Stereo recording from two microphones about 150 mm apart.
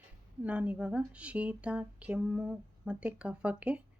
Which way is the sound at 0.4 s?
10° right (ahead or behind).